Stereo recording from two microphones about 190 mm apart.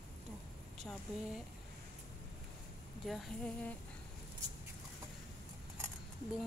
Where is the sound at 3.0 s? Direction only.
Centre (ahead or behind).